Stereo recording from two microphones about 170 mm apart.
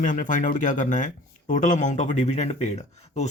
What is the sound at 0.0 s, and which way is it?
Speech, 50° left (ahead or behind).